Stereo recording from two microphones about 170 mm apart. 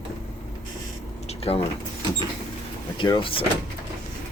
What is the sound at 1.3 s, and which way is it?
Mechanisms, 35° left (ahead or behind).